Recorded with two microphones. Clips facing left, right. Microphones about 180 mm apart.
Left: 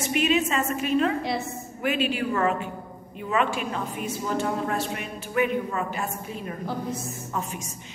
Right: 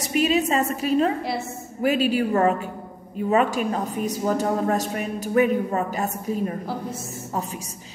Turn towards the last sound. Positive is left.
turn(degrees=-40)  # may be behind; listen again after turning